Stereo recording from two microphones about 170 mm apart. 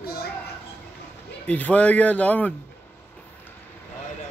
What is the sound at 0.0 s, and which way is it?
Children playing, 65° left (ahead or behind).